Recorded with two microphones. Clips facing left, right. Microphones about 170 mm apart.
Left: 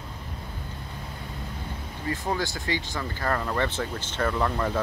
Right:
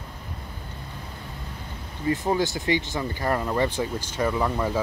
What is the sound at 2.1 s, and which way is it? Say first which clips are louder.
Speech: right 5 dB; 20° right (ahead or behind).